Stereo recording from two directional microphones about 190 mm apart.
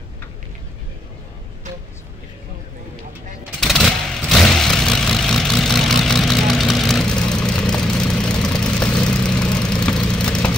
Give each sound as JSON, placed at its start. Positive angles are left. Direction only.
{"t": 3.5, "sound": "vehicle", "side_deg": 0}